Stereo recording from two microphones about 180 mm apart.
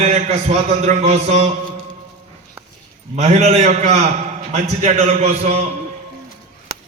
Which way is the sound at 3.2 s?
35° right (ahead or behind).